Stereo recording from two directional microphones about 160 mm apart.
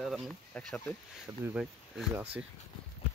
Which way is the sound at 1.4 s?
10° right (ahead or behind).